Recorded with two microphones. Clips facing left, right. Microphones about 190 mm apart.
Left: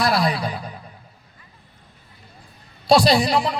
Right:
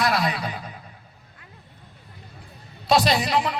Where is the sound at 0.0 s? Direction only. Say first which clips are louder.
Left 3 dB; 35° left (ahead or behind).